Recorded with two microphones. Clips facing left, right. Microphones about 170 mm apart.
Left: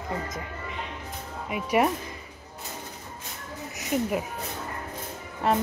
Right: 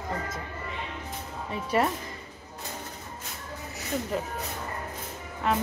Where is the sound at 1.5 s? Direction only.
15° left (ahead or behind).